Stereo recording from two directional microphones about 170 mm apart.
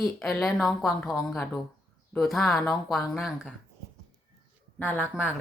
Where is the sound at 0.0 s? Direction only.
5° left (ahead or behind).